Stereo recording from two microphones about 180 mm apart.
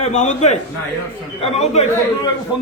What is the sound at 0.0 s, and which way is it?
A man's voice, 40° left (ahead or behind).